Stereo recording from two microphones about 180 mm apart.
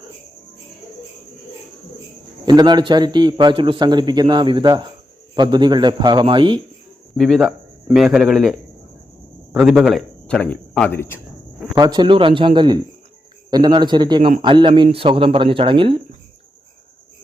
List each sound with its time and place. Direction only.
2.5 s a man's voice: 25° right (ahead or behind)
7.2 s a man's voice: centre (ahead or behind)
11.7 s a man's voice: 25° right (ahead or behind)